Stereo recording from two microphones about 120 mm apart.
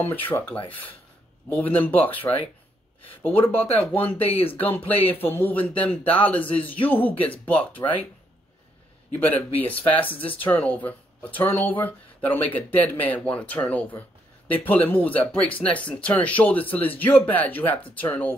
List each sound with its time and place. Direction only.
0.0 s speech: 15° left (ahead or behind)
9.1 s speech: 15° left (ahead or behind)